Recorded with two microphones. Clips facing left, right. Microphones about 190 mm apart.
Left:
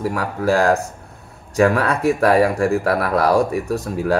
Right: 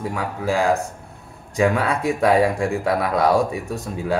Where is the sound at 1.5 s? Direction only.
75° left (ahead or behind).